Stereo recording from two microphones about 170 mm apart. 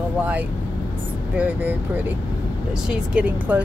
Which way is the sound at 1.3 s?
10° right (ahead or behind).